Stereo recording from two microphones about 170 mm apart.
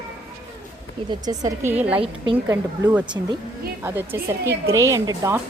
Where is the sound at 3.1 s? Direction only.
15° right (ahead or behind).